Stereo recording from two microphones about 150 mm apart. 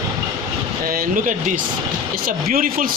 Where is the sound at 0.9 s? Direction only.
65° right (ahead or behind).